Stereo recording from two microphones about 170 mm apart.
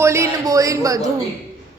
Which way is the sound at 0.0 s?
15° right (ahead or behind).